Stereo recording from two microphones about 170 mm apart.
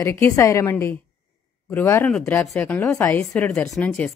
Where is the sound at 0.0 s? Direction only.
15° left (ahead or behind).